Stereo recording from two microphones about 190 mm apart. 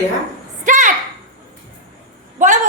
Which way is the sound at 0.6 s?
40° right (ahead or behind).